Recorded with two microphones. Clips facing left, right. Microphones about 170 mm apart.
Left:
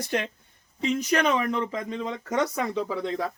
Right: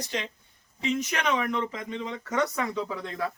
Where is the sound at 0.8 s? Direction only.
40° left (ahead or behind).